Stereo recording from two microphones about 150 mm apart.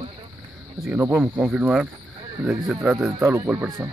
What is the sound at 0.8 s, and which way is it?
Speech, 10° right (ahead or behind).